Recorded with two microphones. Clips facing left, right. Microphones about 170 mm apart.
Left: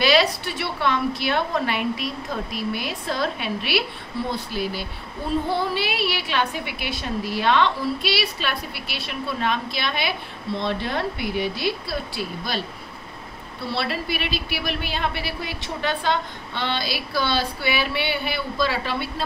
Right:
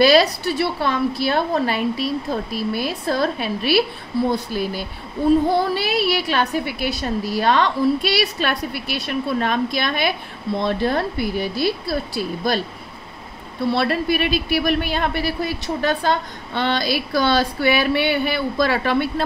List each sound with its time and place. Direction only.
0.0 s a woman's voice: 40° right (ahead or behind)
13.7 s speech: 50° right (ahead or behind)